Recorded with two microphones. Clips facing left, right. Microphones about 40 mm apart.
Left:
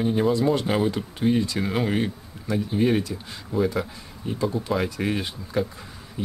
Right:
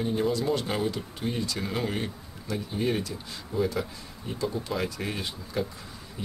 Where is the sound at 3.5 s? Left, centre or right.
Centre.